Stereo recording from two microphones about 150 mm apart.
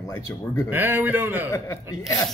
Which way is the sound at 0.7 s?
15° right (ahead or behind).